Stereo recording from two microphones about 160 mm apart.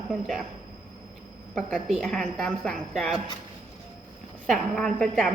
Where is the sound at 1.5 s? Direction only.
5° left (ahead or behind).